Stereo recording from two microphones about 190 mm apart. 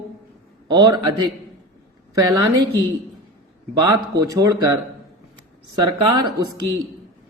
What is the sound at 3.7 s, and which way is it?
Speech, 20° right (ahead or behind).